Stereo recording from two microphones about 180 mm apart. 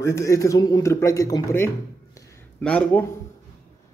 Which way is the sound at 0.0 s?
15° left (ahead or behind).